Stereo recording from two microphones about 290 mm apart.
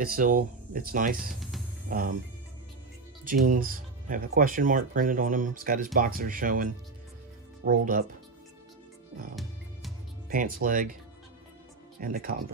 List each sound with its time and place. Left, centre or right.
0.0 s speech: right
1.3 s music: centre
1.9 s speech: right
3.3 s speech: right
9.3 s music: centre
10.3 s speech: right
12.0 s speech: right